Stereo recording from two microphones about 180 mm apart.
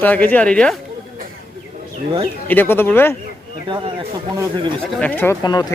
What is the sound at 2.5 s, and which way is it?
Speech, 10° left (ahead or behind).